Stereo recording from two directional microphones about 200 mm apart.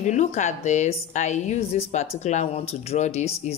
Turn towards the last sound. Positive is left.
turn(degrees=35)  # may be behind; listen again after turning